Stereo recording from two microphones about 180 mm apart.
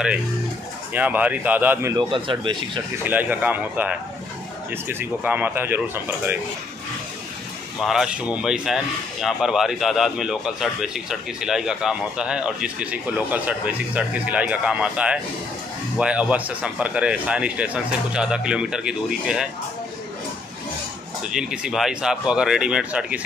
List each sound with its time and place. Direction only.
0.9 s speech: 10° right (ahead or behind)
2.0 s speech: 30° right (ahead or behind)
3.0 s speech: 10° right (ahead or behind)
7.8 s speech: centre (ahead or behind)
21.3 s speech: 5° right (ahead or behind)